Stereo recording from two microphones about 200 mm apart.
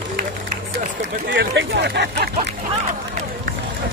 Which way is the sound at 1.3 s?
60° right (ahead or behind).